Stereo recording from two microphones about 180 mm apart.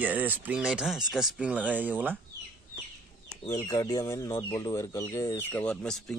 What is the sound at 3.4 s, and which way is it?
Speech, 20° left (ahead or behind).